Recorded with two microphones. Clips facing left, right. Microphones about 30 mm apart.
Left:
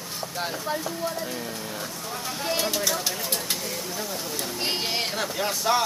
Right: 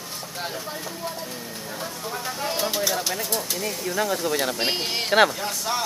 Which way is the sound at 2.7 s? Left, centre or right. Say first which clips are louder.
Right 2 dB; centre.